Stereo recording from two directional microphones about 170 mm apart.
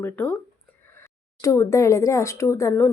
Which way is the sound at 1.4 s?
15° left (ahead or behind).